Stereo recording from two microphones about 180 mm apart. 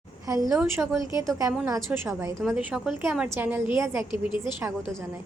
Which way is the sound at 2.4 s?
5° right (ahead or behind).